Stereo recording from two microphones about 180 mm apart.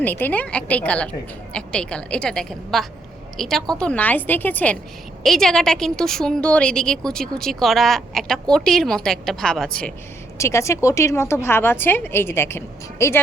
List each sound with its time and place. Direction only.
0.0 s a woman's voice: 10° left (ahead or behind)
10.3 s a woman's voice: 15° left (ahead or behind)